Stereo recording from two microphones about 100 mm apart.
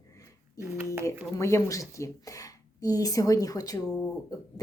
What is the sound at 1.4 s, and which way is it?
A woman's voice, 30° left (ahead or behind).